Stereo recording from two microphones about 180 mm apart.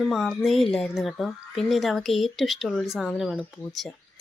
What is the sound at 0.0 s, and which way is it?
A woman's voice, centre (ahead or behind).